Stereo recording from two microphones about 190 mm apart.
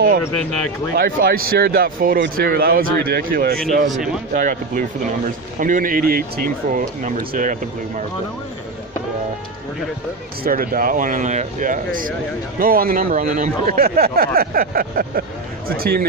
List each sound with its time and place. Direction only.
0.9 s speech: 50° right (ahead or behind)
10.4 s speech: 50° right (ahead or behind)